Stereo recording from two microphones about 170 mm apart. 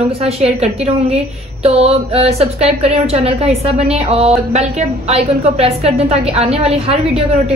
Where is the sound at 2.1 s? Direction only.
35° right (ahead or behind).